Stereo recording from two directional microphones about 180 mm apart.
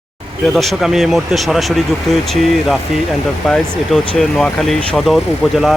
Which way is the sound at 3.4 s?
5° left (ahead or behind).